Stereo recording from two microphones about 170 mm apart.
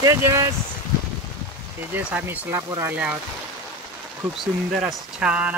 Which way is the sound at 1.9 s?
10° right (ahead or behind).